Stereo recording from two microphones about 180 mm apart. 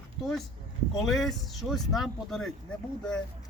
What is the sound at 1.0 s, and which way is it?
Speech, centre (ahead or behind).